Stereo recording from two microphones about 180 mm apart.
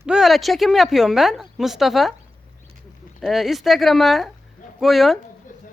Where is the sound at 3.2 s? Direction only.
Centre (ahead or behind).